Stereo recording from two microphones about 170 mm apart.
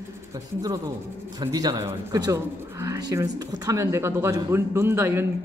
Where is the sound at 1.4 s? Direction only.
25° right (ahead or behind).